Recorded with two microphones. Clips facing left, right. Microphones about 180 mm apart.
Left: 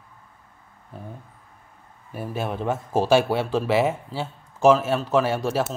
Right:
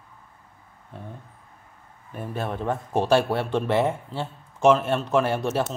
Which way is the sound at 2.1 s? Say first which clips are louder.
Left 1 dB; 5° left (ahead or behind).